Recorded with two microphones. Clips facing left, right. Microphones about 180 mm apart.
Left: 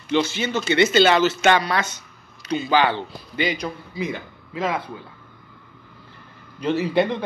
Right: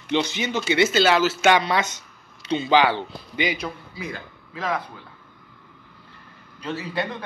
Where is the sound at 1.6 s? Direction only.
20° right (ahead or behind).